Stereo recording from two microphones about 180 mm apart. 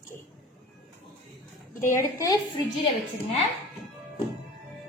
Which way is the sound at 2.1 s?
20° left (ahead or behind).